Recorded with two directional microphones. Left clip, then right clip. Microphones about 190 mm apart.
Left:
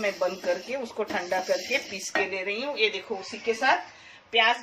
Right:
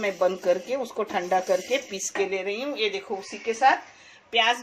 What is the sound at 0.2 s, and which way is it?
Speech, 45° right (ahead or behind).